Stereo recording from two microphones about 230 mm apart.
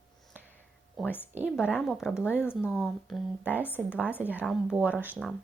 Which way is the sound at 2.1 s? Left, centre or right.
Centre.